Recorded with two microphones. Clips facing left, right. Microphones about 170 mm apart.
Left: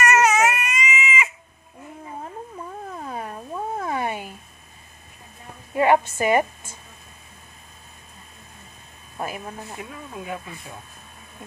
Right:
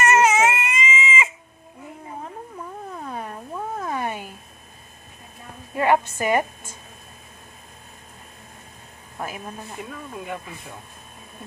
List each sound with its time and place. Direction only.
0.0 s baby cry: 25° right (ahead or behind)
3.0 s cat: 5° left (ahead or behind)
5.7 s a woman's voice: 10° left (ahead or behind)
9.1 s speech: 10° left (ahead or behind)